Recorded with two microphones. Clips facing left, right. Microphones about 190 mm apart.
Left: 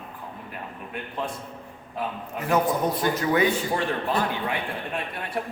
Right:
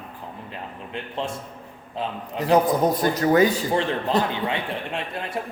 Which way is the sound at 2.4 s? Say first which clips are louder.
Right 5 dB; 35° right (ahead or behind).